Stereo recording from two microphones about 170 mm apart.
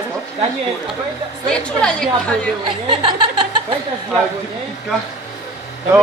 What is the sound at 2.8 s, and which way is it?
Speech, 30° right (ahead or behind).